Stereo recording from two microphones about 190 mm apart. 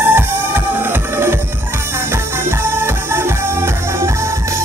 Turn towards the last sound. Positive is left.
turn(degrees=-10)  # may be behind; listen again after turning